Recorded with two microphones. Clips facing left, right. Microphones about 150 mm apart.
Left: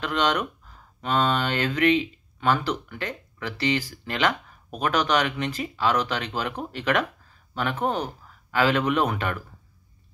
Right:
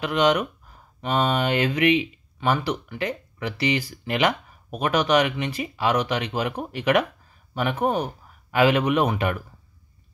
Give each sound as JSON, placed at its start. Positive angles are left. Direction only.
{"t": 0.0, "sound": "speech", "side_deg": -10}